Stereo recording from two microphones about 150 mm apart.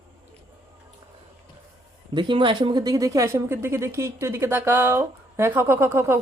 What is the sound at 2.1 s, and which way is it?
A woman's voice, 30° right (ahead or behind).